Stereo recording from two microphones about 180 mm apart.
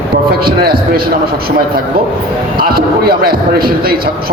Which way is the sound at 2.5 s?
55° right (ahead or behind).